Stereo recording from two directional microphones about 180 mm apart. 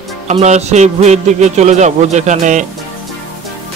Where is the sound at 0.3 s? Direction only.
40° right (ahead or behind).